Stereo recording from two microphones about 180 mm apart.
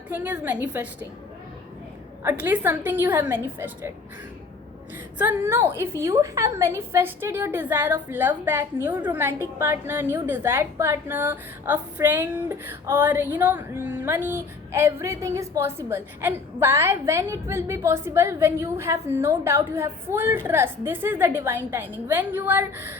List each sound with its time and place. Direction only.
0.1 s a woman's voice: 10° right (ahead or behind)
2.2 s a woman's voice: 10° right (ahead or behind)
5.1 s a woman's voice: 10° right (ahead or behind)